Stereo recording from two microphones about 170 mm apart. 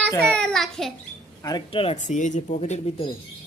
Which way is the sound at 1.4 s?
25° left (ahead or behind).